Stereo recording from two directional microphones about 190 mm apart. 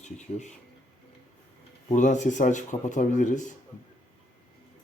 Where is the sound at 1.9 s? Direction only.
40° left (ahead or behind).